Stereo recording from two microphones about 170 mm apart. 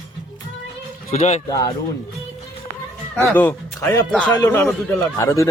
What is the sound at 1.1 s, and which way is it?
Speech, 40° left (ahead or behind).